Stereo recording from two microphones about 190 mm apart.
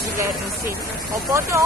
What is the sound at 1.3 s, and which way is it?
Speech, 15° right (ahead or behind).